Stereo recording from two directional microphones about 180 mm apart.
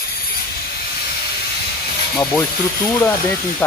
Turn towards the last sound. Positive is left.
turn(degrees=10)  # may be behind; listen again after turning